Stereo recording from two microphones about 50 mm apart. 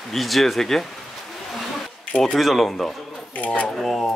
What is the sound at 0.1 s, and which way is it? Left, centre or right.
Speech, centre.